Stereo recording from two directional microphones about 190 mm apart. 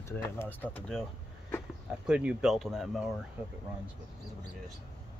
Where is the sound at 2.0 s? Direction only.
5° right (ahead or behind).